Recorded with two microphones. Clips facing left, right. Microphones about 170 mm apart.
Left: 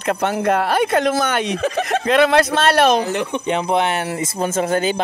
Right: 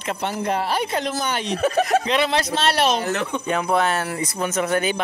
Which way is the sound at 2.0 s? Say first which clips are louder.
Left 7 dB; 55° left (ahead or behind).